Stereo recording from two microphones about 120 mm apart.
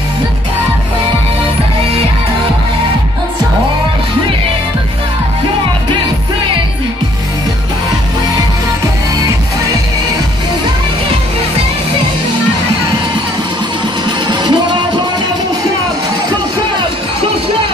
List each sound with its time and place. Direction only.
14.2 s music: 40° right (ahead or behind)